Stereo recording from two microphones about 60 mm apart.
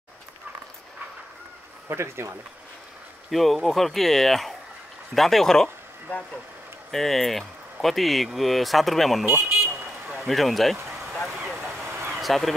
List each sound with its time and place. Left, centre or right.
1.9 s speech: right
3.3 s speech: centre
9.2 s car alarm: right
10.2 s speech: centre
12.1 s a sound: centre